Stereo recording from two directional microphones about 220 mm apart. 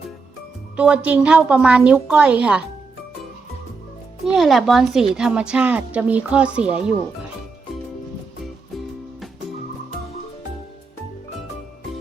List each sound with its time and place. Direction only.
0.8 s a woman's voice: 5° right (ahead or behind)
4.3 s a woman's voice: centre (ahead or behind)